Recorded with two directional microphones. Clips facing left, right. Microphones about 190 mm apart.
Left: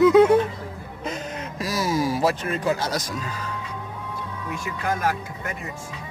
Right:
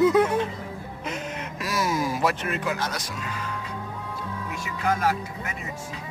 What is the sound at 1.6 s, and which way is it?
Speech, 35° left (ahead or behind).